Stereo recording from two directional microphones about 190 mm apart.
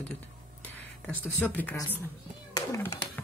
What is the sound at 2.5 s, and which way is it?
Cat, 15° left (ahead or behind).